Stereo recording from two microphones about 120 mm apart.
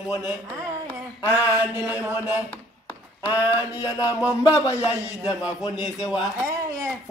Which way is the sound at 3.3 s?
30° left (ahead or behind).